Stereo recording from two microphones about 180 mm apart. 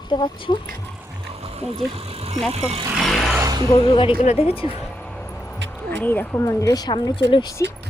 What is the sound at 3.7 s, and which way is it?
Speech, 25° left (ahead or behind).